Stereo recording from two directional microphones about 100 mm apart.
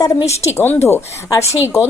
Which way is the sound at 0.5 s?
25° left (ahead or behind).